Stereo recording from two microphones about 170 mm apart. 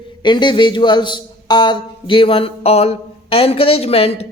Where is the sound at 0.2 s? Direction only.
25° left (ahead or behind).